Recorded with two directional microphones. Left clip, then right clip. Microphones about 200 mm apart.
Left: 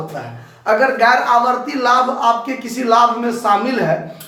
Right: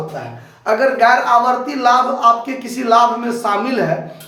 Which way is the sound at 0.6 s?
15° right (ahead or behind).